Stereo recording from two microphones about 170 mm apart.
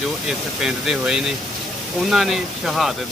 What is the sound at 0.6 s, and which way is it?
Speech, 5° right (ahead or behind).